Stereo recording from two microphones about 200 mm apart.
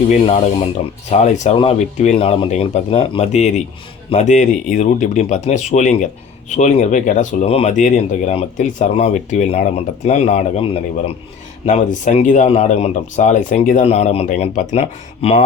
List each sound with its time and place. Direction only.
0.1 s speech: 30° left (ahead or behind)